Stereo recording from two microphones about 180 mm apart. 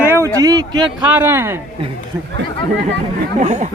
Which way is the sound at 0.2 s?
20° right (ahead or behind).